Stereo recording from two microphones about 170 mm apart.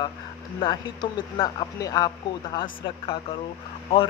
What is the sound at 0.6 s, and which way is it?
Speech, 25° left (ahead or behind).